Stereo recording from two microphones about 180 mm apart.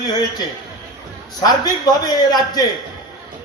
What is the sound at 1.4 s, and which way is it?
A man's voice, 20° left (ahead or behind).